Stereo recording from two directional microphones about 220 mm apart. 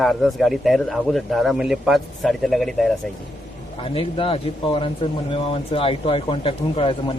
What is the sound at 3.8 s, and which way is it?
Speech, 25° left (ahead or behind).